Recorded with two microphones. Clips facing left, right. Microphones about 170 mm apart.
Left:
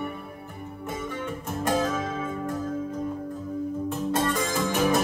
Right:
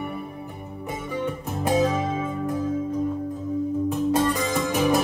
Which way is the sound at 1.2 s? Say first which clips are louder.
Right 3 dB; centre (ahead or behind).